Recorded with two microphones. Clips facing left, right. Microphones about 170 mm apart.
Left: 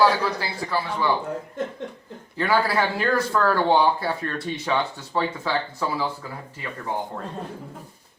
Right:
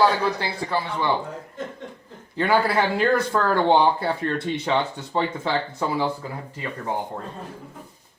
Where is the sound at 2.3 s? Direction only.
20° right (ahead or behind).